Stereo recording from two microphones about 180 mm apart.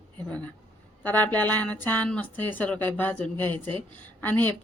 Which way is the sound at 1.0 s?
10° left (ahead or behind).